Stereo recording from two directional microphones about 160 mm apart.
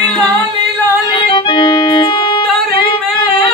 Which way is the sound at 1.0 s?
30° left (ahead or behind).